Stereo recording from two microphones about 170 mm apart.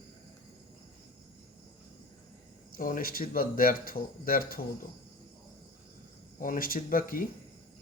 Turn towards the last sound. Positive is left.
turn(degrees=55)  # may be behind; listen again after turning